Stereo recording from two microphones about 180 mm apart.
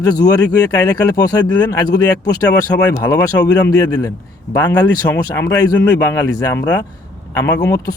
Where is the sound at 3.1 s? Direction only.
20° left (ahead or behind).